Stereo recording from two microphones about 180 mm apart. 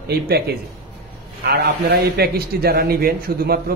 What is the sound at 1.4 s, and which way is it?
A man's voice, 60° right (ahead or behind).